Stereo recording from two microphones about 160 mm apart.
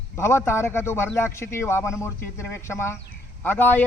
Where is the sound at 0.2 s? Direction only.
15° left (ahead or behind).